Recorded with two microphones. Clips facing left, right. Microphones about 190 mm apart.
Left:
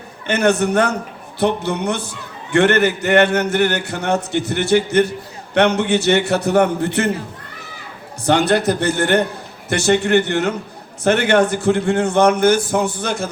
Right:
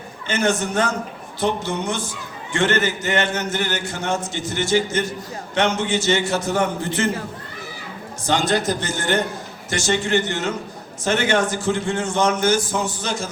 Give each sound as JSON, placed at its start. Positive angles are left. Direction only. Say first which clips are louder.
{"t": 0.3, "sound": "a man's voice", "louder": "left 5 dB", "side_deg": 60}
{"t": 8.3, "sound": "a man's voice", "louder": "left 5 dB", "side_deg": 60}